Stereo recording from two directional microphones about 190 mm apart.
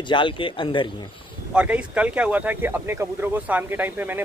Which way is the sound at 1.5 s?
5° right (ahead or behind).